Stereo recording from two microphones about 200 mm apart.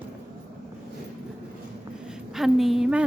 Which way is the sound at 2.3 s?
Centre (ahead or behind).